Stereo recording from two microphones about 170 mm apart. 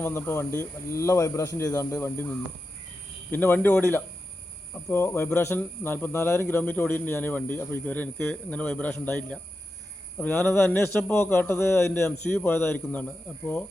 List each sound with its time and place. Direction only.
0.0 s speech: 15° left (ahead or behind)
3.3 s speech: 10° left (ahead or behind)